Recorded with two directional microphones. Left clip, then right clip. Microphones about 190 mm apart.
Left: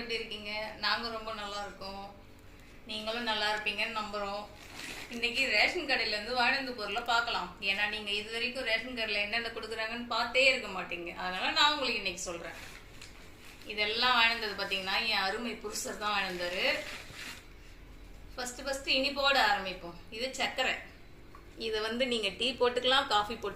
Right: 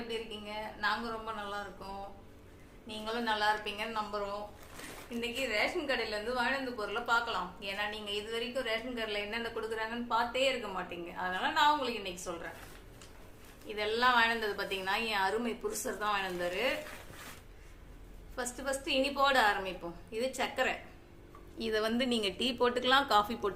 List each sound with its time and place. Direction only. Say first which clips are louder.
0.1 s a woman's voice: left 4 dB; 15° right (ahead or behind)
5.5 s a woman's voice: left 2 dB; 25° right (ahead or behind)
13.7 s a woman's voice: even; 35° right (ahead or behind)
18.3 s a woman's voice: even; 45° right (ahead or behind)
21.6 s a woman's voice: even; 65° right (ahead or behind)